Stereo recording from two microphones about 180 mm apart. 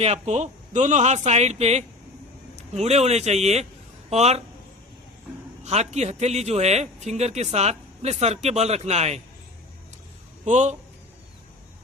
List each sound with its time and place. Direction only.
0.0 s speech: 35° right (ahead or behind)
5.6 s speech: 40° right (ahead or behind)
10.4 s speech: 40° right (ahead or behind)